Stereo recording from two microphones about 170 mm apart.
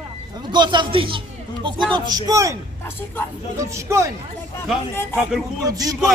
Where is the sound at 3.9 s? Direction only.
15° right (ahead or behind).